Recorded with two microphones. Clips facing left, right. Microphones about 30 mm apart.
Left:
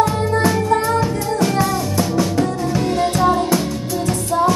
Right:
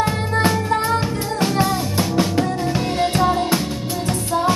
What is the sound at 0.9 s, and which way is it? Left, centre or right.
Music, right.